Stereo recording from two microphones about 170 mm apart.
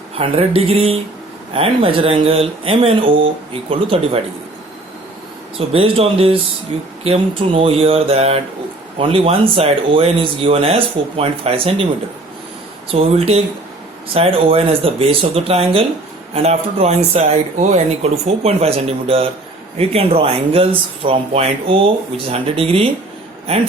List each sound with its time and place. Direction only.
0.2 s speech: 35° right (ahead or behind)
5.5 s speech: 35° right (ahead or behind)
12.9 s speech: 35° right (ahead or behind)